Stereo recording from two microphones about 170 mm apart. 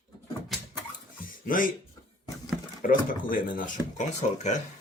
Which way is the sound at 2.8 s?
55° left (ahead or behind).